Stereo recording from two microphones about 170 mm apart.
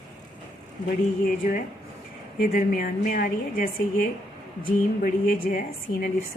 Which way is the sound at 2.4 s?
55° left (ahead or behind).